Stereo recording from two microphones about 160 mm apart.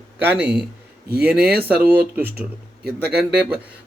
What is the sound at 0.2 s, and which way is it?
Speech, 10° right (ahead or behind).